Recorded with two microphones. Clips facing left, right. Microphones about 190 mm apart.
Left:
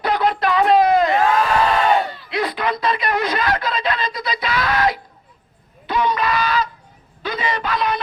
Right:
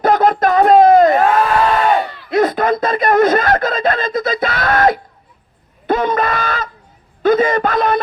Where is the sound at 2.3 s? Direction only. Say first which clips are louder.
Right 9 dB; 45° right (ahead or behind).